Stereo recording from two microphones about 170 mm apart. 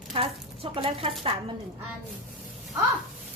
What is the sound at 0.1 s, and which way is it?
Speech, 30° right (ahead or behind).